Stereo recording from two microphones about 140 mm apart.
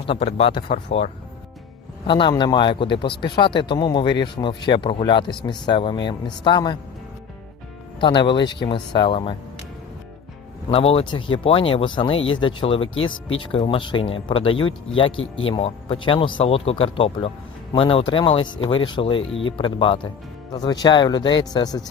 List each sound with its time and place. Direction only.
0.0 s speech: 40° left (ahead or behind)
2.0 s speech: 35° left (ahead or behind)
8.0 s speech: 35° left (ahead or behind)
10.7 s speech: 45° left (ahead or behind); by 21.8 s 30° left (ahead or behind)